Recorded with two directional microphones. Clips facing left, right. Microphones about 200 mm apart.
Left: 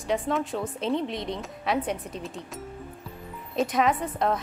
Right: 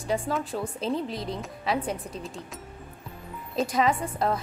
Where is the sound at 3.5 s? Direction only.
Centre (ahead or behind).